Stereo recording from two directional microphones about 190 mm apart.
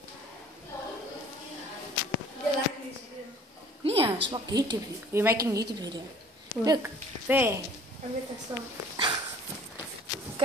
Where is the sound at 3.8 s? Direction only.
30° right (ahead or behind).